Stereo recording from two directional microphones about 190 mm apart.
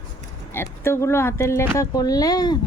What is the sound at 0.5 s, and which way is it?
Speech, 15° left (ahead or behind).